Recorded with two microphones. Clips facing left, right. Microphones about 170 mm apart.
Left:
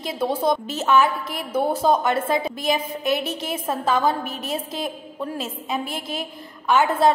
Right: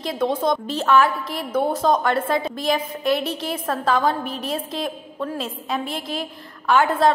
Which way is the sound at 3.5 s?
25° left (ahead or behind).